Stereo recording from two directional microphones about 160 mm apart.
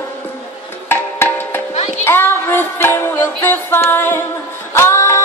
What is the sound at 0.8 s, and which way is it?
Music, 15° left (ahead or behind).